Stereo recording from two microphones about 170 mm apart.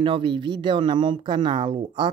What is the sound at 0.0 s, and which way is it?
Speech, 30° right (ahead or behind).